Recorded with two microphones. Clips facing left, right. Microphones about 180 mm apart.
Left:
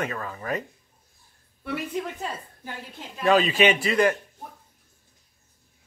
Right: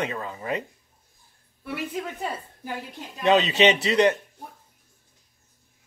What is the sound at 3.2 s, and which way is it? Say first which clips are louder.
Speech: right 1 dB; 25° right (ahead or behind).